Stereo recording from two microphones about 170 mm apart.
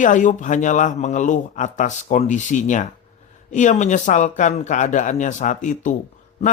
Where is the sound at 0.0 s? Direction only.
50° left (ahead or behind).